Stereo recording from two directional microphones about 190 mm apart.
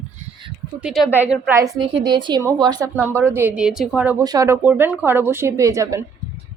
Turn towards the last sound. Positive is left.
turn(degrees=-15)  # may be behind; listen again after turning